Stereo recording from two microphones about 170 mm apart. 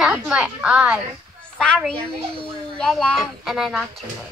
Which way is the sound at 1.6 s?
5° left (ahead or behind).